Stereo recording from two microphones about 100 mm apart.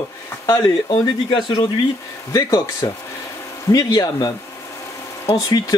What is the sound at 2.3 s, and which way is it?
Speech, 35° left (ahead or behind).